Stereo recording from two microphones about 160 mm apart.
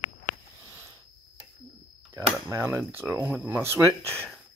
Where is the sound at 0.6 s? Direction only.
15° right (ahead or behind).